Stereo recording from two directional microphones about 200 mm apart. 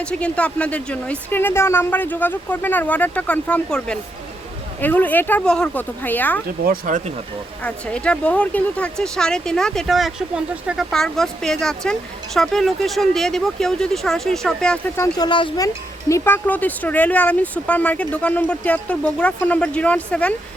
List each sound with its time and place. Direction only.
0.0 s speech: 5° left (ahead or behind)
6.7 s speech: 40° right (ahead or behind)
7.6 s speech: 5° left (ahead or behind)